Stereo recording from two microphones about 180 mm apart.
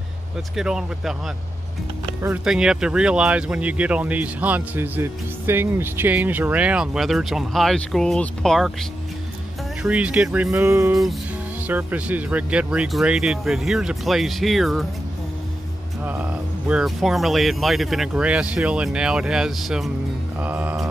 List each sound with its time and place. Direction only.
0.6 s speech: 5° right (ahead or behind)
9.8 s speech: 5° right (ahead or behind)
10.5 s speech: 15° right (ahead or behind)
16.0 s speech: 10° right (ahead or behind)